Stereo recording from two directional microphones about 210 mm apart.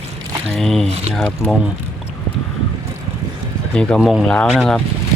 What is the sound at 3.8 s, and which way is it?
Speech, 5° left (ahead or behind).